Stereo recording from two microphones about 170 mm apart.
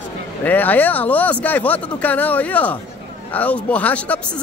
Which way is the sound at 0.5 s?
10° left (ahead or behind).